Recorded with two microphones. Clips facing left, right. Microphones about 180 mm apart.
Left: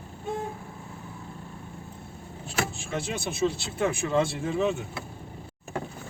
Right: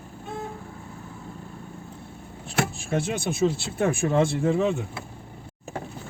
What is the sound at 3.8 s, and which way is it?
Speech, 50° right (ahead or behind).